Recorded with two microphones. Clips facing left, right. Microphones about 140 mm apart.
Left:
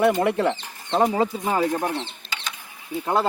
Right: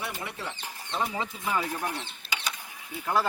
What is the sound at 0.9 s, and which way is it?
Speech, 50° left (ahead or behind).